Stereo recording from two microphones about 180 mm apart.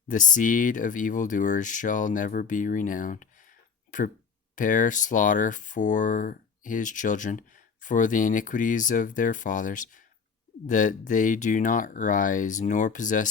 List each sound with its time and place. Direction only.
0.1 s speech: 45° left (ahead or behind)
4.5 s speech: 45° left (ahead or behind)